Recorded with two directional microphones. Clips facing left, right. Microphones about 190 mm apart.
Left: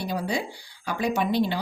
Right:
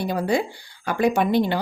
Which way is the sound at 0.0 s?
55° right (ahead or behind).